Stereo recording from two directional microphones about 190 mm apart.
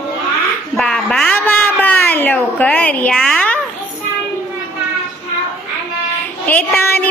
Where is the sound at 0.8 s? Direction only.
5° left (ahead or behind).